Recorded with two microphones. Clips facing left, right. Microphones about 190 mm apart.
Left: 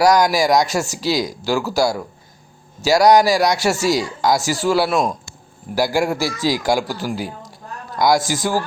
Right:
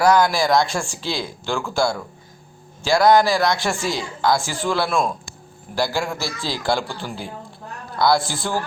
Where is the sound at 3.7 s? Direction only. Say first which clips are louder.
Left 6 dB; 40° left (ahead or behind).